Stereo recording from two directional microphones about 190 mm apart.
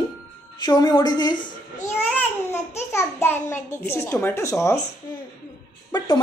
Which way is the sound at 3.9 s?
15° left (ahead or behind).